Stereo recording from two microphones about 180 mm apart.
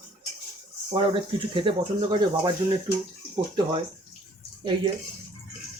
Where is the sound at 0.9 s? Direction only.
30° right (ahead or behind).